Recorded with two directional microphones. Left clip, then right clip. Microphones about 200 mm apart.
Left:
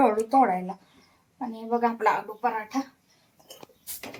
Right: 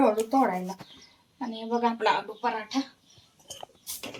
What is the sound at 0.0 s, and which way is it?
Speech, centre (ahead or behind).